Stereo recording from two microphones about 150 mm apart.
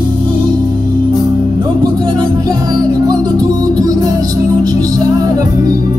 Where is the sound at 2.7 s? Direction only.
25° right (ahead or behind).